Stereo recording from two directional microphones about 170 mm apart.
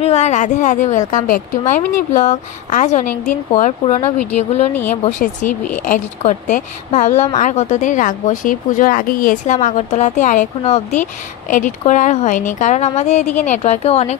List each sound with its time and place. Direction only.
0.0 s speech: 40° left (ahead or behind)
5.2 s speech: 55° left (ahead or behind)